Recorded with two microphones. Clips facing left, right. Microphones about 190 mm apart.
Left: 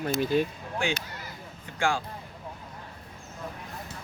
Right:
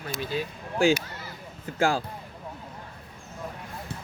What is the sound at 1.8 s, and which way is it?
Speech, 35° right (ahead or behind).